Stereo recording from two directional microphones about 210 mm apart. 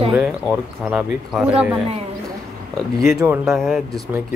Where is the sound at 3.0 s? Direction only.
5° right (ahead or behind).